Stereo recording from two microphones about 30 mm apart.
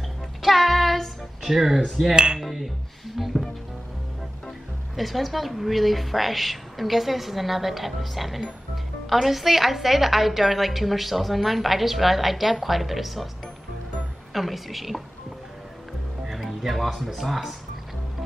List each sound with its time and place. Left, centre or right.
0.4 s child singing: centre
1.4 s speech: centre
2.1 s music: right
2.4 s a woman's voice: centre
4.9 s a woman's voice: centre
14.3 s a woman's voice: centre
16.3 s music: centre
17.2 s speech: centre